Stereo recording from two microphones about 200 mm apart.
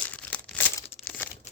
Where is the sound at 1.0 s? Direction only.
5° left (ahead or behind).